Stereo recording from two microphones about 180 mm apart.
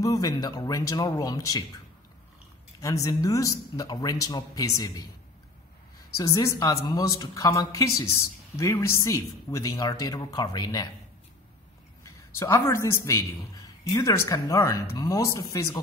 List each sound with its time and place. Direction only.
0.0 s speech: 20° left (ahead or behind)
2.8 s speech: 20° left (ahead or behind)
6.1 s speech: 20° left (ahead or behind)
12.0 s a man's voice: 15° left (ahead or behind)